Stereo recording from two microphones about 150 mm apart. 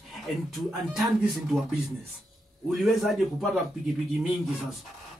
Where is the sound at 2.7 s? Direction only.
Centre (ahead or behind).